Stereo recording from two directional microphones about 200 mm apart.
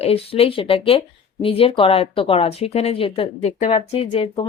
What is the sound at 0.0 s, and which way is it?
Speech, 30° left (ahead or behind).